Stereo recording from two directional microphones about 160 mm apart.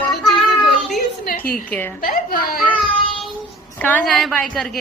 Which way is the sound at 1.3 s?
65° left (ahead or behind).